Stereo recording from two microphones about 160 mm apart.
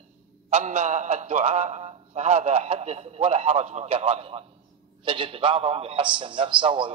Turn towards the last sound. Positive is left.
turn(degrees=-30)  # may be behind; listen again after turning